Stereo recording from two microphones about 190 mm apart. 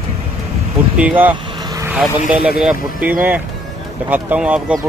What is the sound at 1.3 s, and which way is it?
Vehicle, 20° right (ahead or behind).